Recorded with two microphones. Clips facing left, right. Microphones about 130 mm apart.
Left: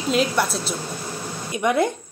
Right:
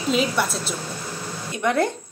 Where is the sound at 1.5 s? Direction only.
15° left (ahead or behind).